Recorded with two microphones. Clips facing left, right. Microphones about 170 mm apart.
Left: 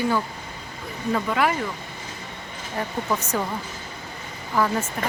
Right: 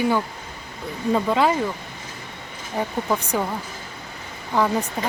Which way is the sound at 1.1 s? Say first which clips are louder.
Right 3 dB; 25° right (ahead or behind).